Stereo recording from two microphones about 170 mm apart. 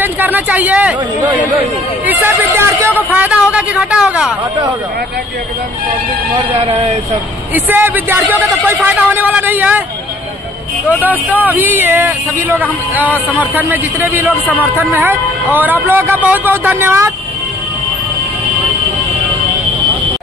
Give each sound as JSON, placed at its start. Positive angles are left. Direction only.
{"t": 0.0, "sound": "speech", "side_deg": -10}
{"t": 2.0, "sound": "speech", "side_deg": -10}
{"t": 6.5, "sound": "speech", "side_deg": -40}
{"t": 7.5, "sound": "speech", "side_deg": -10}
{"t": 11.0, "sound": "speech", "side_deg": -10}